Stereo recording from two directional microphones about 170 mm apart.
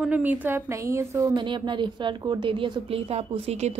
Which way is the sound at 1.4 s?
30° right (ahead or behind).